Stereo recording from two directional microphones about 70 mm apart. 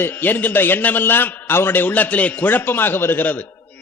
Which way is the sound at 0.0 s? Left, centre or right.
Left.